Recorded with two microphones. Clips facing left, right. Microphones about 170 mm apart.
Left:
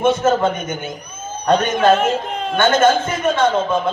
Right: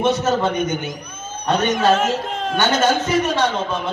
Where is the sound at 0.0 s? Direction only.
50° left (ahead or behind).